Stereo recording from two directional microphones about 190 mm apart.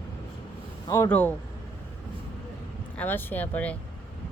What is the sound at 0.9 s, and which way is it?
Speech, 15° left (ahead or behind).